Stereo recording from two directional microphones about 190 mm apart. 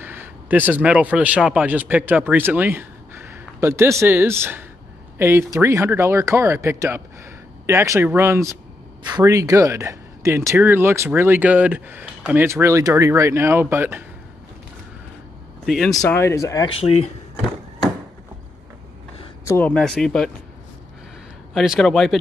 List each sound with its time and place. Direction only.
0.0 s speech: 10° right (ahead or behind)
15.6 s speech: centre (ahead or behind)
15.9 s speech: 15° left (ahead or behind)
16.8 s speech: 35° left (ahead or behind)
19.4 s speech: 10° left (ahead or behind)
21.5 s speech: centre (ahead or behind)